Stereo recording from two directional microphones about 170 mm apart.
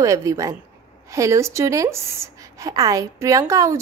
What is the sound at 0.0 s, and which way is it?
A woman's voice, 20° right (ahead or behind).